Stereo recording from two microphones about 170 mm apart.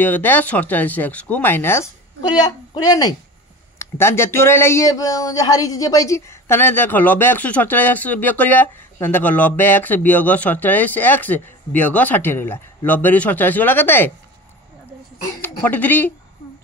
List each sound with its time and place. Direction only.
0.0 s speech: 10° left (ahead or behind)
2.2 s a woman's voice: 25° left (ahead or behind)
15.4 s speech: 10° left (ahead or behind)